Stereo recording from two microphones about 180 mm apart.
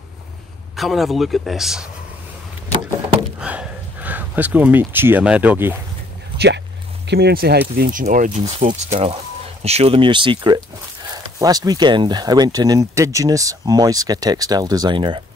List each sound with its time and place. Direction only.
0.7 s a man's voice: centre (ahead or behind)
3.3 s a sound: 5° right (ahead or behind)
6.3 s speech: 70° right (ahead or behind); by 8.4 s 45° right (ahead or behind)
8.4 s speech: 30° right (ahead or behind)